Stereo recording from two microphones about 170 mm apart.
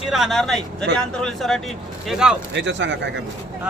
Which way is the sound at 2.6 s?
90° right.